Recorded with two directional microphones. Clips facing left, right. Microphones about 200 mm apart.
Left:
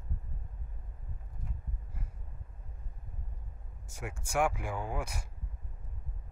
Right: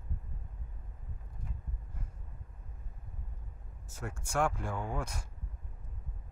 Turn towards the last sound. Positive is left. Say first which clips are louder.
# even
turn(degrees=10)  # may be behind; listen again after turning